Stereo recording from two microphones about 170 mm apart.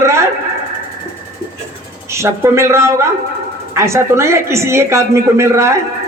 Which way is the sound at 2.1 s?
15° right (ahead or behind).